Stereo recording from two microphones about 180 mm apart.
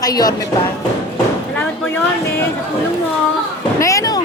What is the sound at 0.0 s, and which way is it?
Speech, 20° left (ahead or behind).